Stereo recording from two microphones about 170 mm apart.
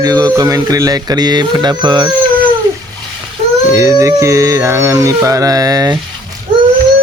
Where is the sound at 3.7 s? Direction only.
15° right (ahead or behind).